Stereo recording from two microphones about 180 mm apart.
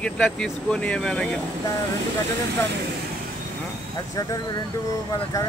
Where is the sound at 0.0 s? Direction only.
5° left (ahead or behind).